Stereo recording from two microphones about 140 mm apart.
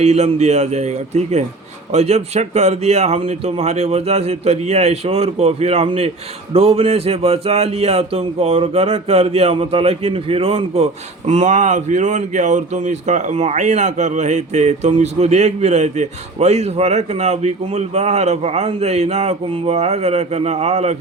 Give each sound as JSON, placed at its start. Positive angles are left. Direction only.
{"t": 0.0, "sound": "speech", "side_deg": -50}
{"t": 11.3, "sound": "speech", "side_deg": -55}